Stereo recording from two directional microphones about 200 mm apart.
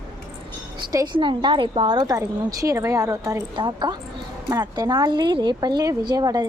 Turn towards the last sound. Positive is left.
turn(degrees=-20)  # may be behind; listen again after turning